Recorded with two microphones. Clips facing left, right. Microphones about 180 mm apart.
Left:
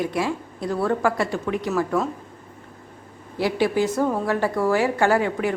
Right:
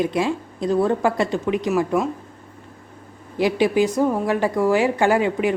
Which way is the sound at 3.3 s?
15° right (ahead or behind).